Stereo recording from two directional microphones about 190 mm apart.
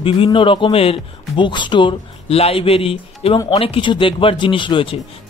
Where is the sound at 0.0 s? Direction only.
25° left (ahead or behind).